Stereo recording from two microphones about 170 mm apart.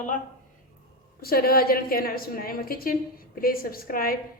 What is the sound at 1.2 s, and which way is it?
A woman's voice, 60° left (ahead or behind).